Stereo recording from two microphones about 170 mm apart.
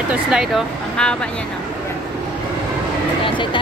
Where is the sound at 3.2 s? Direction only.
30° left (ahead or behind).